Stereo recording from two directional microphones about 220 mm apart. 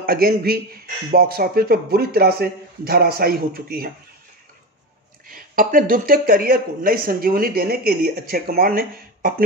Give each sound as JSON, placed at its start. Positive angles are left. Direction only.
{"t": 0.0, "sound": "a man's voice", "side_deg": -40}
{"t": 5.3, "sound": "speech", "side_deg": -40}